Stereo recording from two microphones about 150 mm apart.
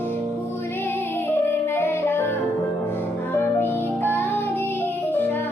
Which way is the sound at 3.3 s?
15° left (ahead or behind).